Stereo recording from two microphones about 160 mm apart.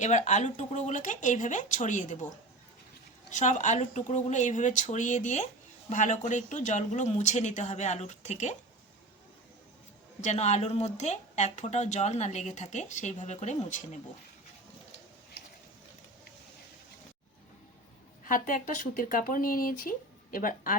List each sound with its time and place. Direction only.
0.0 s speech: 50° left (ahead or behind)
3.2 s speech: 50° left (ahead or behind)
10.2 s speech: 45° left (ahead or behind)
18.3 s speech: 55° left (ahead or behind)